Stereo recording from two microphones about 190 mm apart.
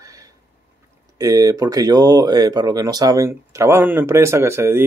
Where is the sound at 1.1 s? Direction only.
20° right (ahead or behind).